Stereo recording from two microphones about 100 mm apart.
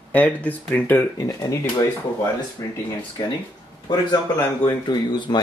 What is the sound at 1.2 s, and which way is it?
Speech, 35° left (ahead or behind).